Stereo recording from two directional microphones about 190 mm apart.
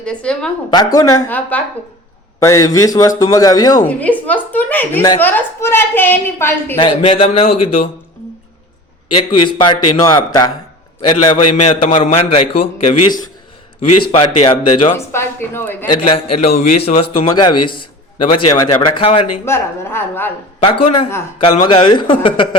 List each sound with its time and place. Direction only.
0.0 s a woman's voice: 5° left (ahead or behind)
0.7 s a woman's voice: 20° left (ahead or behind)
3.8 s a woman's voice: 10° left (ahead or behind)
7.0 s a man's voice: 30° left (ahead or behind)
9.1 s a man's voice: 25° left (ahead or behind)
11.6 s a man's voice: 35° left (ahead or behind)
12.9 s a man's voice: 20° left (ahead or behind)
14.9 s a woman's voice: 15° left (ahead or behind)
15.9 s a man's voice: 30° left (ahead or behind)
19.5 s a woman's voice: 15° left (ahead or behind)
20.6 s a man's voice: 30° left (ahead or behind)